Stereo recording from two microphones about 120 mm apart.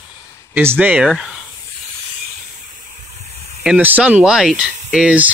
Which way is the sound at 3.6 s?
10° right (ahead or behind).